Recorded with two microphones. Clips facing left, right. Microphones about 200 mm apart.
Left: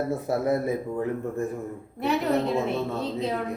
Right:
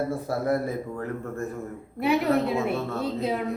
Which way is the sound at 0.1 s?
20° left (ahead or behind).